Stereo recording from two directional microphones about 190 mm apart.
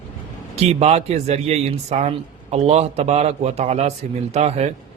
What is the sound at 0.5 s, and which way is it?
A man's voice, 35° right (ahead or behind).